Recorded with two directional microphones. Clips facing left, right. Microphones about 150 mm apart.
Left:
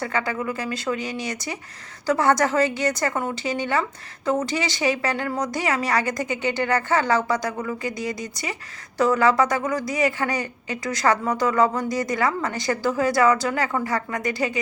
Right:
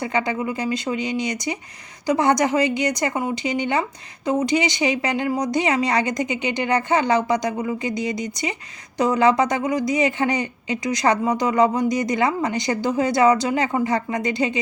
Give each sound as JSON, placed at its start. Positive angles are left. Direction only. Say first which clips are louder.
{"t": 0.0, "sound": "a woman's voice", "louder": "right 3 dB", "side_deg": -20}